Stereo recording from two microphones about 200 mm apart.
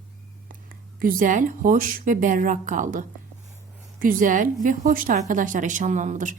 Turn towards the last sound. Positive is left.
turn(degrees=-40)  # may be behind; listen again after turning